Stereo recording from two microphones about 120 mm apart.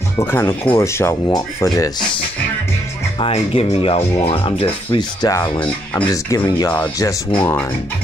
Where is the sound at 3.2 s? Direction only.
50° left (ahead or behind).